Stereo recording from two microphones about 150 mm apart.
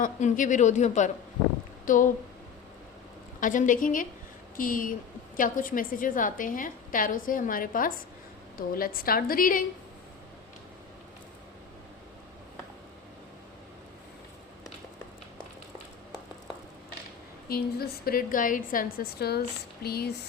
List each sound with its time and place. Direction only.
0.0 s speech: 55° left (ahead or behind)
3.4 s a woman's voice: 60° left (ahead or behind)
17.5 s a woman's voice: 90° left